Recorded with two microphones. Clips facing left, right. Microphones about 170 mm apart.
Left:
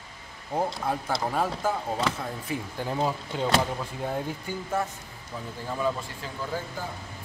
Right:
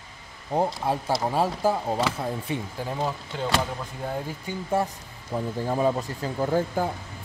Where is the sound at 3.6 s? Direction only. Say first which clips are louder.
Left 1 dB; centre (ahead or behind).